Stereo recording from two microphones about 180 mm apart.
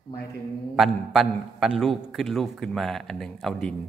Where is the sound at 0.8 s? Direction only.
Centre (ahead or behind).